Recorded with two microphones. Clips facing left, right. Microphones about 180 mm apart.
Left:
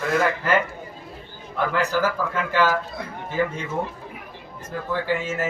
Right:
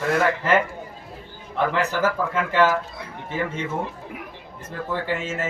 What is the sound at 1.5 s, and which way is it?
Speech, 25° right (ahead or behind).